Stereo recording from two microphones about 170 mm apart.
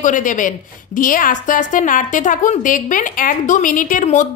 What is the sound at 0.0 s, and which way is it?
A woman's voice, 50° left (ahead or behind).